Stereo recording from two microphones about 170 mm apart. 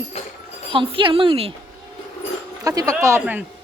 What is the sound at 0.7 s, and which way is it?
Speech, 30° right (ahead or behind).